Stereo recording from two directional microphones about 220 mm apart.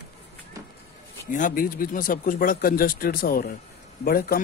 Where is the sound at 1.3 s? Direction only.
40° left (ahead or behind).